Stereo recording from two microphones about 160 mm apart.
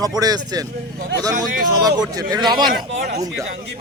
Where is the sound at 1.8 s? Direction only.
25° right (ahead or behind).